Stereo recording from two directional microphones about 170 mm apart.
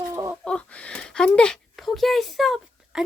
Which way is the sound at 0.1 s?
20° right (ahead or behind).